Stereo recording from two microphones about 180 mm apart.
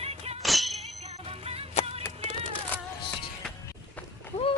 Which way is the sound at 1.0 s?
35° right (ahead or behind).